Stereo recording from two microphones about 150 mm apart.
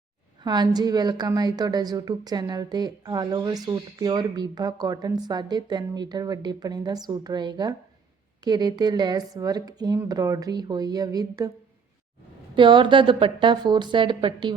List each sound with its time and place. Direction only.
0.4 s a woman's voice: 30° right (ahead or behind)
12.5 s a woman's voice: 30° right (ahead or behind)